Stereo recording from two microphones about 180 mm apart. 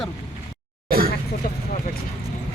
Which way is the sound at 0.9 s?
55° right (ahead or behind).